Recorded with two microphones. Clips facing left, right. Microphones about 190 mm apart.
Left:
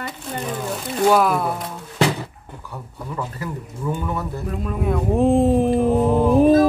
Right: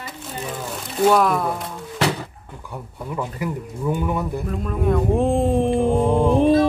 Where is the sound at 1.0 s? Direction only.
Centre (ahead or behind).